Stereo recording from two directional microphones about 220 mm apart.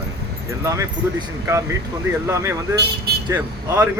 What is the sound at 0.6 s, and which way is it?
Speech, 15° right (ahead or behind).